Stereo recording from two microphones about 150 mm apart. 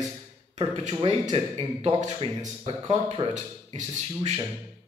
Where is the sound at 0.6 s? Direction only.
45° right (ahead or behind).